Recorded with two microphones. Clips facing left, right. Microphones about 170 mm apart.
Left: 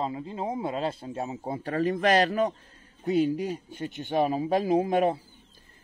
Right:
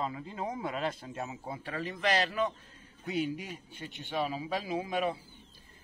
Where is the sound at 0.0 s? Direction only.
25° left (ahead or behind); by 5.2 s 45° left (ahead or behind).